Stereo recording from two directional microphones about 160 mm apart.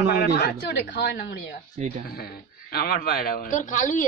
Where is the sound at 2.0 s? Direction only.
75° left (ahead or behind).